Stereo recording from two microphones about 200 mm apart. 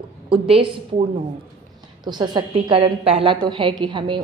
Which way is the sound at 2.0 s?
20° right (ahead or behind).